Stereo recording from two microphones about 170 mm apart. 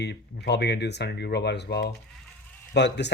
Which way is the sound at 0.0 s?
85° left.